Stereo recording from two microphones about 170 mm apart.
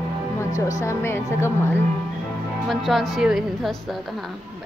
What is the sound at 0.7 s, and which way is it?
Speech, 15° left (ahead or behind).